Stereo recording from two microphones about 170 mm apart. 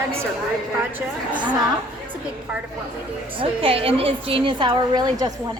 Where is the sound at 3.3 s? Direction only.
30° right (ahead or behind).